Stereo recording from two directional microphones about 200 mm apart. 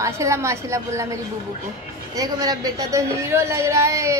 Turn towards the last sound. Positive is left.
turn(degrees=-15)  # may be behind; listen again after turning